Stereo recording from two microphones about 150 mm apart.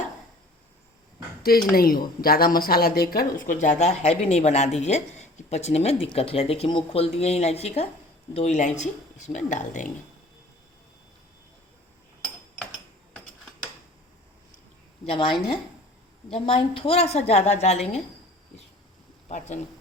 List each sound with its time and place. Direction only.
1.4 s a sound: 85° left
1.7 s speech: 80° left
3.6 s speech: 50° left (ahead or behind)
15.0 s a woman's voice: 35° left (ahead or behind)